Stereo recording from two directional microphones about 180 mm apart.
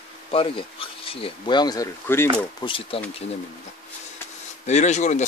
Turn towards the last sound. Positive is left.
turn(degrees=40)  # may be behind; listen again after turning